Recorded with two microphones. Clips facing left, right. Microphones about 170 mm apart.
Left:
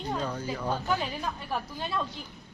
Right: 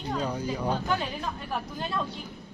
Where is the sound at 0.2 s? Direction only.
10° right (ahead or behind).